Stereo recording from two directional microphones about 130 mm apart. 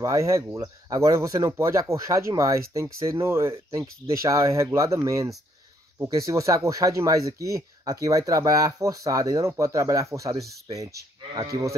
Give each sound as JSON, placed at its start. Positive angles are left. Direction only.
{"t": 0.0, "sound": "speech", "side_deg": -25}